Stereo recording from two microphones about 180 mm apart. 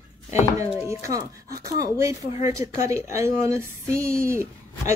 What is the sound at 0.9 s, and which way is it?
Speech, 15° right (ahead or behind).